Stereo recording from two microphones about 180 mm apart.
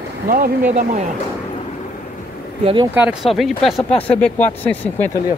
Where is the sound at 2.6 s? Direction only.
25° right (ahead or behind).